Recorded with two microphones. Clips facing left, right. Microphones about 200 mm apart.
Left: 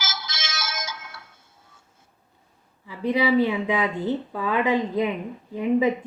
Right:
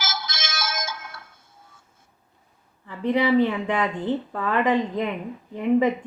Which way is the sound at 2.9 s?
10° left (ahead or behind).